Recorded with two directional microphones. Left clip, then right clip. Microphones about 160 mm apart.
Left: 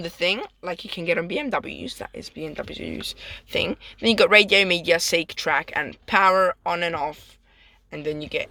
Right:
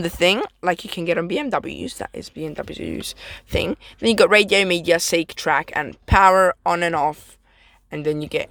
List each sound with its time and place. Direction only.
0.0 s speech: 50° right (ahead or behind)